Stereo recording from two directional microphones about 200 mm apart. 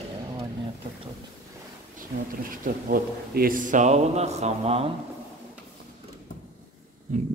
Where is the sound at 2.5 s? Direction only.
45° right (ahead or behind).